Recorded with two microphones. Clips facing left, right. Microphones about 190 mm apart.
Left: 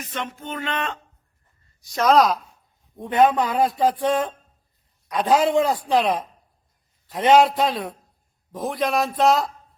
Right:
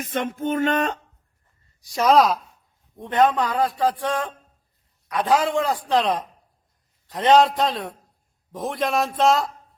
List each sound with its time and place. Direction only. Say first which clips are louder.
0.0 s music: right 6 dB; 50° right (ahead or behind)
1.9 s a man's voice: even; 5° right (ahead or behind)
3.2 s a man's voice: left 1 dB; 15° left (ahead or behind); by 9.5 s centre (ahead or behind)